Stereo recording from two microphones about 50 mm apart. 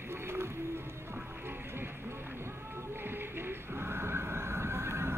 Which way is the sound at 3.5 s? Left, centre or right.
Right.